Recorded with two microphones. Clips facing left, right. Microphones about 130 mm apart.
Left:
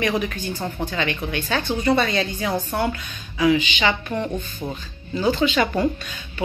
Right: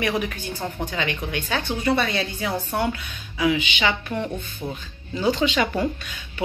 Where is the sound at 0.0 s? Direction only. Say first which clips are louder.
Left 2 dB; 10° right (ahead or behind).